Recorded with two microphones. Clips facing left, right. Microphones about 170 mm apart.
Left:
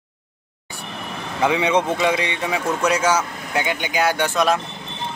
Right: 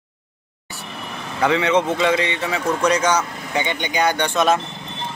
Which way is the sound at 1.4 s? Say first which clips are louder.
Right 1 dB; 10° left (ahead or behind).